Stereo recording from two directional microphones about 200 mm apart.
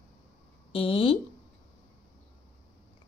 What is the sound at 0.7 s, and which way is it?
Speech, 30° left (ahead or behind).